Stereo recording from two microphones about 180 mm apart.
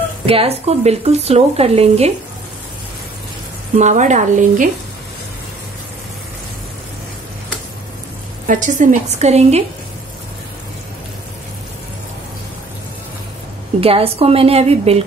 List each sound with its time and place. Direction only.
0.3 s speech: 35° right (ahead or behind)
3.7 s a woman's voice: 40° right (ahead or behind)
8.5 s a woman's voice: 45° right (ahead or behind)
13.7 s speech: 30° right (ahead or behind)